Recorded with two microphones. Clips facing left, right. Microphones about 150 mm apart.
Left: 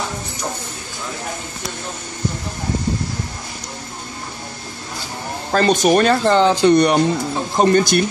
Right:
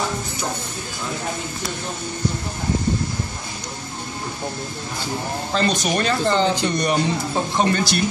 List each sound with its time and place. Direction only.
5.5 s speech: 50° left (ahead or behind)
7.5 s speech: 45° left (ahead or behind)